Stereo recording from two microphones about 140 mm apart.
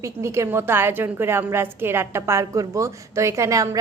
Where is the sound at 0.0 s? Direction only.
20° right (ahead or behind).